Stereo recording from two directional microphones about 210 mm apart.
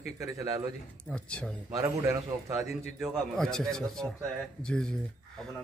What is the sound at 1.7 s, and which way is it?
Speech, 15° right (ahead or behind).